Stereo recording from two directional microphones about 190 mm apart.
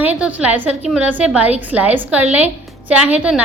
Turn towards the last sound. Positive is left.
turn(degrees=-5)  # may be behind; listen again after turning